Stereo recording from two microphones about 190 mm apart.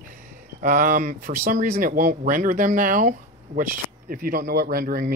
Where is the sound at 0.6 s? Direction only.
45° right (ahead or behind).